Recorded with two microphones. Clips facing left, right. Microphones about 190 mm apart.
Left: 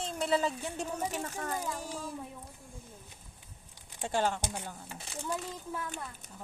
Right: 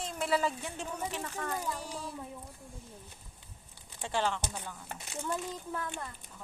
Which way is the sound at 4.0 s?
45° left (ahead or behind).